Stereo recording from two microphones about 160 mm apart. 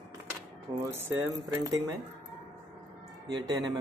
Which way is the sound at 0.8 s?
15° right (ahead or behind).